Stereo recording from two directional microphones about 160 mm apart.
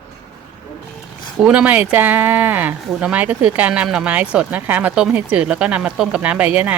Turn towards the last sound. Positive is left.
turn(degrees=-10)  # may be behind; listen again after turning